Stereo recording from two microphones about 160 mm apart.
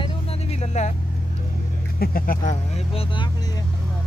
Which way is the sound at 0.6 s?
45° left (ahead or behind).